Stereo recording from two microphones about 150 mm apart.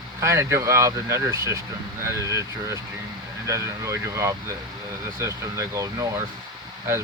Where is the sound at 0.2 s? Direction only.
20° right (ahead or behind).